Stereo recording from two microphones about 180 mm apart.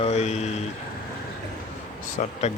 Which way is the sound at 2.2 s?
45° left (ahead or behind).